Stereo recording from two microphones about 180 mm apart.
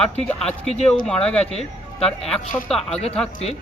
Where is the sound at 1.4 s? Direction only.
35° left (ahead or behind).